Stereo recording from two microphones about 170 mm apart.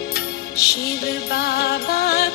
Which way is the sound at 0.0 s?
65° left (ahead or behind).